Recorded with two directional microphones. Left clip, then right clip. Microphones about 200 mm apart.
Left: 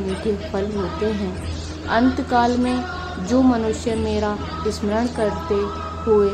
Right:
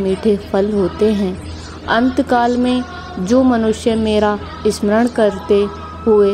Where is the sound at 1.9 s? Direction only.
35° right (ahead or behind).